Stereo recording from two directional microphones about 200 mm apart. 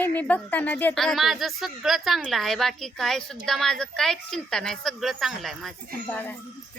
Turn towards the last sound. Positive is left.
turn(degrees=10)  # may be behind; listen again after turning